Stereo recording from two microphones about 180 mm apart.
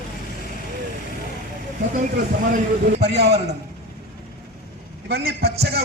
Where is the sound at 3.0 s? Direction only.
40° right (ahead or behind).